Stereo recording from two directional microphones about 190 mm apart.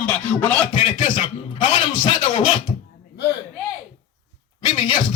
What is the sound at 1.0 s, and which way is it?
Speech, 25° left (ahead or behind).